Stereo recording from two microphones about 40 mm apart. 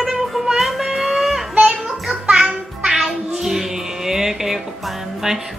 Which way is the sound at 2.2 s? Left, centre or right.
Right.